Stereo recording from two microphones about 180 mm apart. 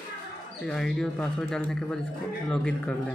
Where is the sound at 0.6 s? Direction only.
5° left (ahead or behind).